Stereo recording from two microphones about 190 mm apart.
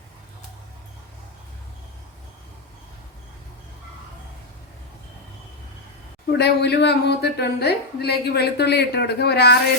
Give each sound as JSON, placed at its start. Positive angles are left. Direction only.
{"t": 6.3, "sound": "a woman's voice", "side_deg": 60}